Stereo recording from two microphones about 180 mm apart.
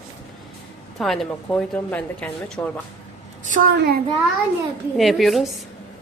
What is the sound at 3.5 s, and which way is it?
Speech, 50° right (ahead or behind).